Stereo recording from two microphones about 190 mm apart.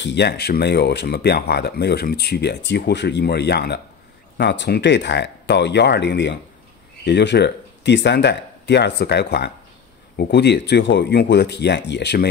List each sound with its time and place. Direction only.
0.0 s speech: 65° left (ahead or behind)